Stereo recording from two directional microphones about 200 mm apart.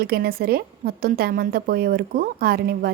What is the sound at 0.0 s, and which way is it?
A woman's voice, 50° right (ahead or behind).